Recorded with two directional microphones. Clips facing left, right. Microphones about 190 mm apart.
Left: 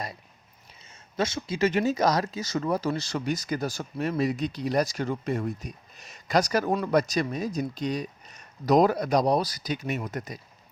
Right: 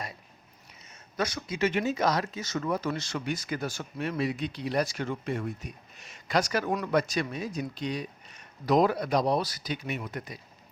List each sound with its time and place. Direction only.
1.1 s speech: 25° left (ahead or behind); by 10.3 s 40° left (ahead or behind)